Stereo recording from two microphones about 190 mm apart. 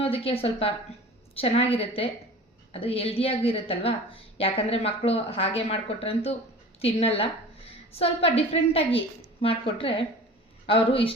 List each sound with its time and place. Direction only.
0.0 s a woman's voice: 30° left (ahead or behind)